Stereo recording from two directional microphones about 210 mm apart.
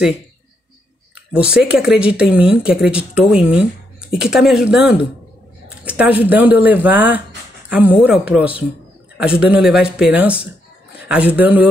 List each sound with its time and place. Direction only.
1.1 s speech: 5° right (ahead or behind)